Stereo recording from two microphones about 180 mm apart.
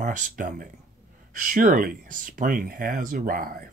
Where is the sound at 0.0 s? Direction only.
45° right (ahead or behind).